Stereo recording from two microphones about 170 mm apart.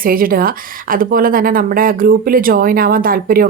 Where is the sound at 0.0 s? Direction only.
55° right (ahead or behind).